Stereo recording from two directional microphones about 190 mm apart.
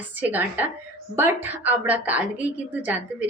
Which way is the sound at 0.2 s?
10° right (ahead or behind).